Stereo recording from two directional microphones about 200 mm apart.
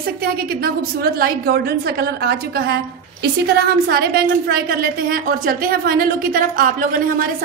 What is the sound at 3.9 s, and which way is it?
A woman's voice, 50° right (ahead or behind).